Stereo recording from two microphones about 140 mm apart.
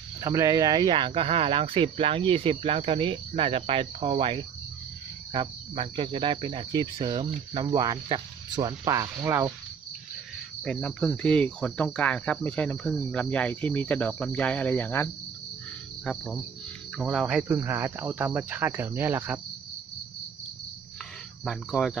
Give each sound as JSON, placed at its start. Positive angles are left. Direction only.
{"t": 0.2, "sound": "speech", "side_deg": -25}
{"t": 10.6, "sound": "cricket", "side_deg": 5}
{"t": 16.1, "sound": "speech", "side_deg": 0}
{"t": 21.5, "sound": "speech", "side_deg": 0}